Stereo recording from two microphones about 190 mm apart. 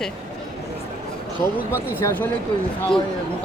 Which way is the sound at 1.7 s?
15° left (ahead or behind).